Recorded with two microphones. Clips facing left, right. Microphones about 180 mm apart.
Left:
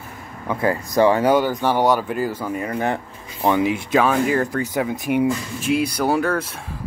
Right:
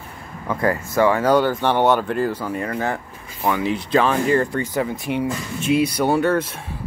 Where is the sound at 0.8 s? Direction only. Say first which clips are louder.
Left 2 dB; 35° left (ahead or behind).